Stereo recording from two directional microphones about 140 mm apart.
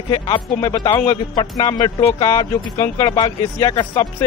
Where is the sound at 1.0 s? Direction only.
35° left (ahead or behind).